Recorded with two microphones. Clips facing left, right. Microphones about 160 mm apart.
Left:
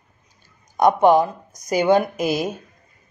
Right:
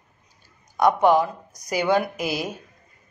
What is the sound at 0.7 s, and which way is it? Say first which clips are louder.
A woman's voice: left 3 dB; 20° left (ahead or behind).